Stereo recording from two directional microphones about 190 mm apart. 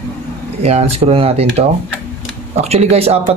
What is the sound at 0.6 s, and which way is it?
Speech, 35° right (ahead or behind).